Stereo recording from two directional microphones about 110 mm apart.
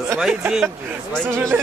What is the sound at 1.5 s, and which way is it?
Speech, 15° right (ahead or behind).